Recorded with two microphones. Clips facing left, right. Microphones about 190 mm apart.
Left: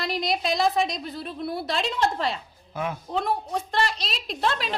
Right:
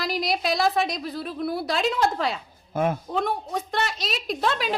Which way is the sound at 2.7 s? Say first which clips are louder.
Right 6 dB; 50° right (ahead or behind).